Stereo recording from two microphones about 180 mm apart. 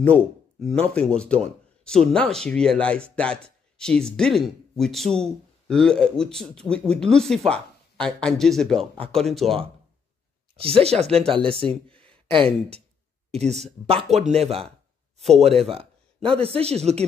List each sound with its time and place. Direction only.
0.0 s speech: 5° left (ahead or behind)
10.5 s speech: 30° right (ahead or behind)